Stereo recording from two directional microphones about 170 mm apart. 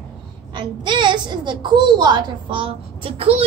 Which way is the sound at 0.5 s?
30° right (ahead or behind).